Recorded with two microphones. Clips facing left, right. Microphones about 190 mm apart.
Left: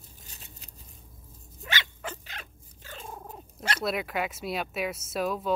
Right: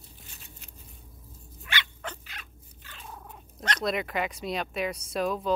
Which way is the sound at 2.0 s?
5° left (ahead or behind).